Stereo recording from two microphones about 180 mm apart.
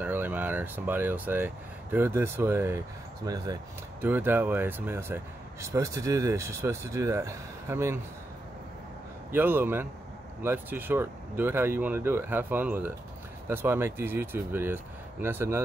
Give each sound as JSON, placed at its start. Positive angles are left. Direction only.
{"t": 0.0, "sound": "speech", "side_deg": -10}
{"t": 9.3, "sound": "speech", "side_deg": -10}